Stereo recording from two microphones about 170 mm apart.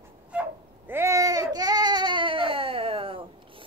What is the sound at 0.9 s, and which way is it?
Baby cry, 15° right (ahead or behind).